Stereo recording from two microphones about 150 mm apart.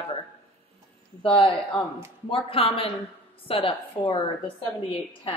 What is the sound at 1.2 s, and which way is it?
Speech, 35° left (ahead or behind).